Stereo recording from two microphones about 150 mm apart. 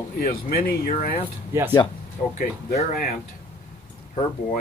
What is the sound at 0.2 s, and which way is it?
Speech, 75° left (ahead or behind).